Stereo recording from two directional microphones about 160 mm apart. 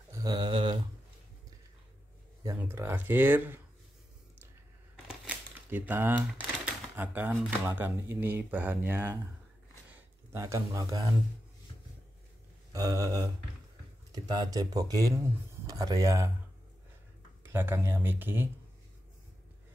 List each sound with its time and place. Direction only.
0.1 s a sound: 25° right (ahead or behind)
2.6 s speech: 15° right (ahead or behind)
4.9 s speech: 10° right (ahead or behind)
9.8 s a sound: 15° right (ahead or behind)
12.7 s speech: 20° right (ahead or behind)
17.4 s speech: 15° right (ahead or behind)